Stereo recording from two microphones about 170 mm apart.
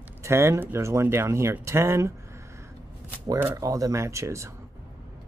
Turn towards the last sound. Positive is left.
turn(degrees=-15)  # may be behind; listen again after turning